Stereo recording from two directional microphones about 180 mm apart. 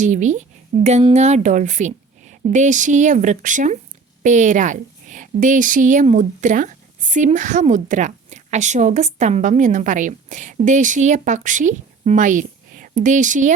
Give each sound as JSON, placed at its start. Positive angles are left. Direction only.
{"t": 0.0, "sound": "a woman's voice", "side_deg": -45}